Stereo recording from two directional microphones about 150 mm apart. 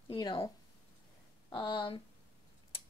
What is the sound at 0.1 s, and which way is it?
Speech, 30° left (ahead or behind).